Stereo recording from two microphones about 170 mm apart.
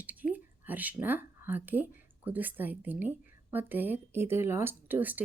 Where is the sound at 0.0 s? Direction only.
10° right (ahead or behind).